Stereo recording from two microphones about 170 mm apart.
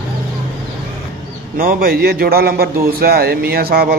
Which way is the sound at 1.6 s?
60° right (ahead or behind).